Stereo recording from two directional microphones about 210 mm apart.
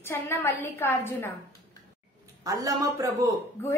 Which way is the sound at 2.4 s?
15° right (ahead or behind).